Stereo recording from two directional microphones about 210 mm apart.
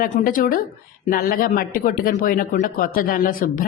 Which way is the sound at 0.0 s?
40° left (ahead or behind).